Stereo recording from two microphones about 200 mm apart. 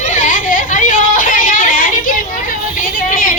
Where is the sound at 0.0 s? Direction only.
40° left (ahead or behind).